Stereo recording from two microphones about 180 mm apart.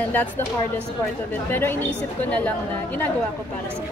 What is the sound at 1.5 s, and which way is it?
Speech, 10° left (ahead or behind).